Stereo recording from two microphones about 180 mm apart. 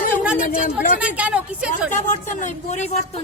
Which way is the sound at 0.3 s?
50° left (ahead or behind).